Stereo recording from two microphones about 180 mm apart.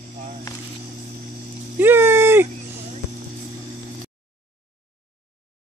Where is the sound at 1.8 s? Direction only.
10° right (ahead or behind).